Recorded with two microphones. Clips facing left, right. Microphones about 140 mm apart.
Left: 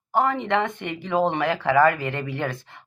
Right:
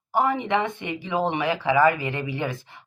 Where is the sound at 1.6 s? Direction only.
60° left (ahead or behind).